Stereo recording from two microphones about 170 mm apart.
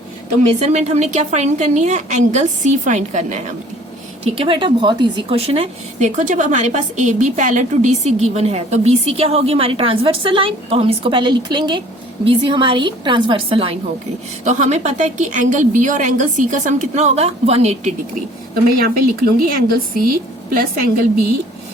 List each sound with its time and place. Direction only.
0.6 s a woman's voice: 40° right (ahead or behind)
4.2 s a woman's voice: 30° right (ahead or behind)
18.8 s a woman's voice: 60° right (ahead or behind)